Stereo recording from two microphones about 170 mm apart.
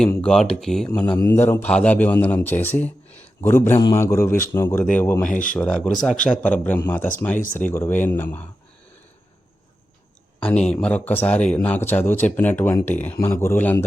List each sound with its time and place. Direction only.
0.2 s a man's voice: 5° left (ahead or behind)
7.3 s speech: 50° left (ahead or behind)
7.7 s a man's voice: 15° left (ahead or behind)
10.7 s a man's voice: 5° left (ahead or behind)